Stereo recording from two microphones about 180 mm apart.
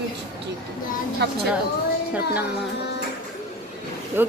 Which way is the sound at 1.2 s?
65° right (ahead or behind).